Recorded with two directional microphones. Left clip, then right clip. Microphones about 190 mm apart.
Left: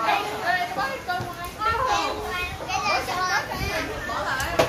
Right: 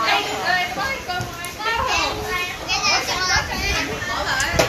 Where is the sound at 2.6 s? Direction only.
55° left (ahead or behind).